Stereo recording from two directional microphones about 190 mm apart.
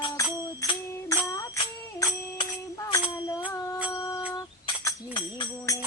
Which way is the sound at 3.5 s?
15° left (ahead or behind).